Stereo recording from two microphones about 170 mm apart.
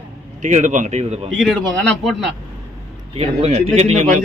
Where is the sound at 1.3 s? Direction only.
Centre (ahead or behind).